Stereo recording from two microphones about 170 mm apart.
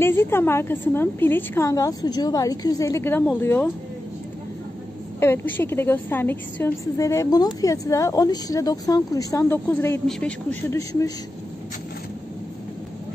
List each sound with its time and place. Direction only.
0.0 s a woman's voice: 15° left (ahead or behind)
5.2 s a woman's voice: 15° left (ahead or behind)
10.8 s a woman's voice: 20° left (ahead or behind)